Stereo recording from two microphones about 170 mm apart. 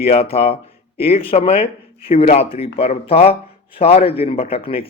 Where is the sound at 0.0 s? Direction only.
35° left (ahead or behind).